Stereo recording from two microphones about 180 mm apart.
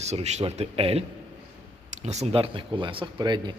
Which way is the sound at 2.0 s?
35° right (ahead or behind).